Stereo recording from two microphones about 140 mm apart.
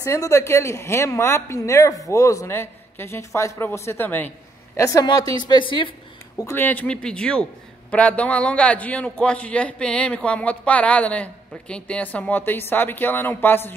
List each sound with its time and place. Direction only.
0.0 s a man's voice: 20° left (ahead or behind)
4.7 s a woman's voice: 25° left (ahead or behind)
6.3 s a man's voice: 20° left (ahead or behind)